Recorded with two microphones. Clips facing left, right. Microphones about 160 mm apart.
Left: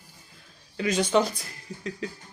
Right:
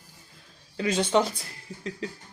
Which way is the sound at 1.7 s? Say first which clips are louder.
Left 2 dB; 30° right (ahead or behind).